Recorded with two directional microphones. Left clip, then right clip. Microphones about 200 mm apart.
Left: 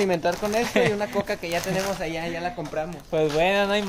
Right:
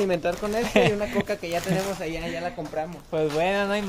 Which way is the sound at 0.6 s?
30° right (ahead or behind).